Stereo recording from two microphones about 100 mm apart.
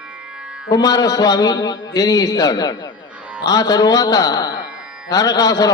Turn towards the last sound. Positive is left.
turn(degrees=40)  # may be behind; listen again after turning